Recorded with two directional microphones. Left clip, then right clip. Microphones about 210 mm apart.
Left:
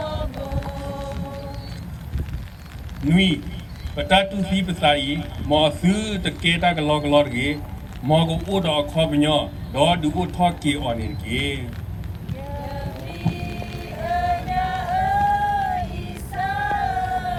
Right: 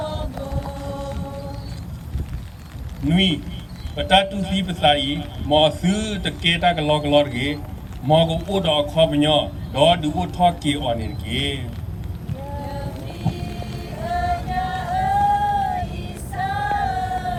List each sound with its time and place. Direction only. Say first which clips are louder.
0.0 s music: even; 30° left (ahead or behind)
3.1 s a man's voice: even; centre (ahead or behind)
14.0 s music: left 1 dB; 30° left (ahead or behind)
16.3 s female singing: even; 30° left (ahead or behind)